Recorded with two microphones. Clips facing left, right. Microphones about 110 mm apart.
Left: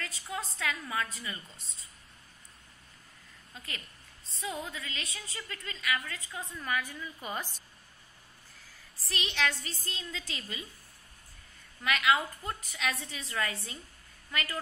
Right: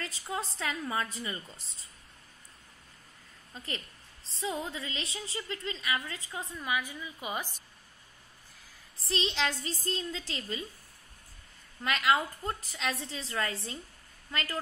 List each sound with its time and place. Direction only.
0.3 s a woman's voice: 30° right (ahead or behind)
4.4 s a woman's voice: 25° right (ahead or behind)
9.0 s a woman's voice: 30° right (ahead or behind)
11.8 s a woman's voice: 35° right (ahead or behind)